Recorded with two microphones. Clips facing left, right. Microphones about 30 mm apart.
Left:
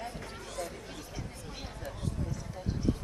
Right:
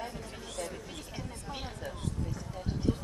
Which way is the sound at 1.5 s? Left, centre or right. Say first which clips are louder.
Right 3 dB; right.